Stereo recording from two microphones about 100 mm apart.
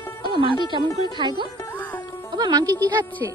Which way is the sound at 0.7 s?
50° right (ahead or behind).